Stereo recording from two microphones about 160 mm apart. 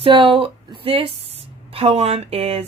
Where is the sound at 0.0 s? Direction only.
35° right (ahead or behind).